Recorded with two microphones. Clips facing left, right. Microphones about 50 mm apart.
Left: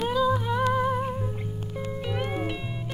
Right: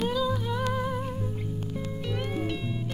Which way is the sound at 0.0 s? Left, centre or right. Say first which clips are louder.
Left 3 dB; centre.